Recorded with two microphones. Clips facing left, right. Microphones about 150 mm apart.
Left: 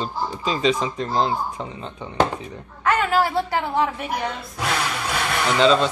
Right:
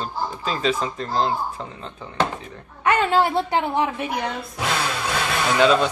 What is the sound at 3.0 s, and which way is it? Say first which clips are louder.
Speech: right 2 dB; 25° right (ahead or behind).